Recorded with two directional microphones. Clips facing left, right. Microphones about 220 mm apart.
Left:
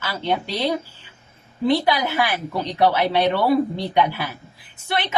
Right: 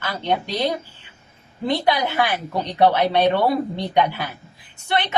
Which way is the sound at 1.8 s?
5° left (ahead or behind).